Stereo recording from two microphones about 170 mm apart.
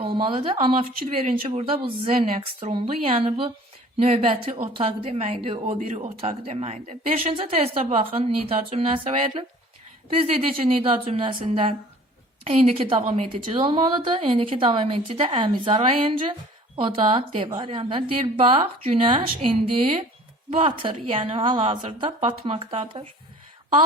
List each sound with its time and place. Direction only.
0.0 s a woman's voice: 30° right (ahead or behind)
13.0 s a woman's voice: 50° right (ahead or behind)
13.3 s a woman's voice: 30° right (ahead or behind)
20.5 s a woman's voice: 35° right (ahead or behind)